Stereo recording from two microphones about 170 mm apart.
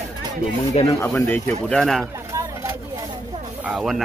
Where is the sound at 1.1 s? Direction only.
10° left (ahead or behind).